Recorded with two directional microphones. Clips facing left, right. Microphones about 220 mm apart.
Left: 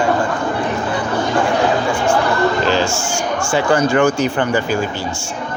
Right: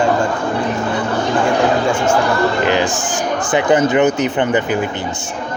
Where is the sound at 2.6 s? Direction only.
15° right (ahead or behind).